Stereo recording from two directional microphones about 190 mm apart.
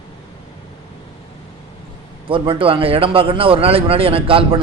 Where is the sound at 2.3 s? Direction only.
30° right (ahead or behind).